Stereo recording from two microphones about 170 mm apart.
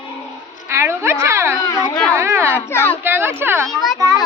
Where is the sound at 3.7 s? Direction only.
Centre (ahead or behind).